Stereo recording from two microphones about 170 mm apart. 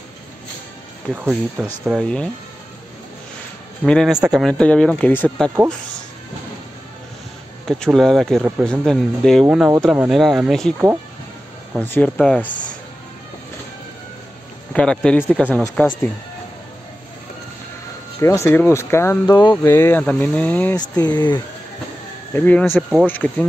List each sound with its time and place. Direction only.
1.1 s speech: 5° right (ahead or behind)
3.8 s speech: centre (ahead or behind)
7.6 s speech: centre (ahead or behind)
11.8 s speech: 10° left (ahead or behind)
14.7 s speech: 5° left (ahead or behind)
18.2 s speech: 15° left (ahead or behind)
20.9 s speech: 25° left (ahead or behind)
22.3 s speech: 10° left (ahead or behind)